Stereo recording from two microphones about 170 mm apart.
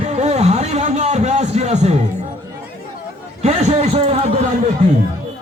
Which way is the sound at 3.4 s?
40° right (ahead or behind).